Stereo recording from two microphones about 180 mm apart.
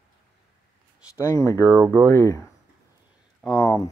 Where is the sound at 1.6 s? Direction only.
10° right (ahead or behind).